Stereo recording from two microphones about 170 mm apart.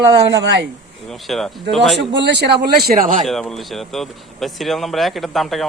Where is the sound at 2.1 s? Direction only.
90° right; by 3.2 s 55° right (ahead or behind).